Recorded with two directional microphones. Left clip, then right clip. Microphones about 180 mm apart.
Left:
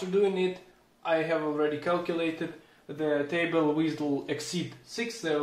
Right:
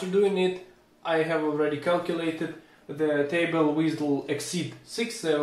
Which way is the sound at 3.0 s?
40° left (ahead or behind).